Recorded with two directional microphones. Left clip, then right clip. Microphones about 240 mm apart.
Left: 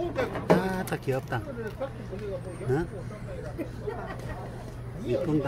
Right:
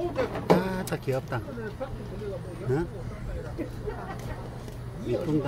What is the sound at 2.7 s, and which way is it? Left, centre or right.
Speech, centre.